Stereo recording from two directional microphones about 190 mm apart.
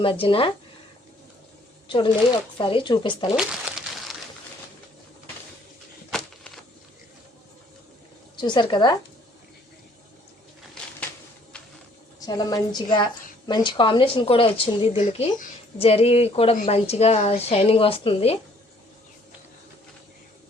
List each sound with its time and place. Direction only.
0.0 s speech: 30° left (ahead or behind)
2.6 s speech: 25° left (ahead or behind)
3.3 s crumpling: 5° right (ahead or behind)
6.1 s a sound: centre (ahead or behind)
8.4 s speech: 25° left (ahead or behind)
12.2 s speech: 20° left (ahead or behind)